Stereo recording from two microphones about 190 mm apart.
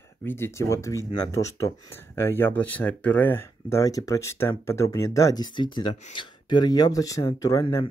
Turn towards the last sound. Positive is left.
turn(degrees=20)  # may be behind; listen again after turning